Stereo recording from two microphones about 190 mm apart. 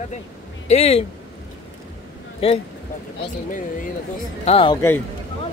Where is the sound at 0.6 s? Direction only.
35° left (ahead or behind).